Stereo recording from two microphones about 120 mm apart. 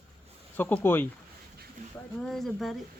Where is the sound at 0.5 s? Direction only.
15° left (ahead or behind).